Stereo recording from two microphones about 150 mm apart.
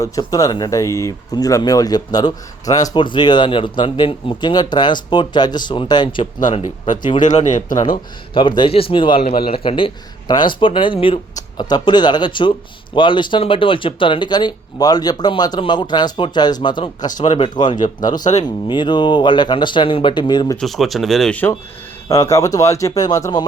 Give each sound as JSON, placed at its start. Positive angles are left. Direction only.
{"t": 0.0, "sound": "speech", "side_deg": 25}
{"t": 6.5, "sound": "speech", "side_deg": 55}
{"t": 8.3, "sound": "speech", "side_deg": 35}
{"t": 20.6, "sound": "speech", "side_deg": 0}
{"t": 22.1, "sound": "speech", "side_deg": 20}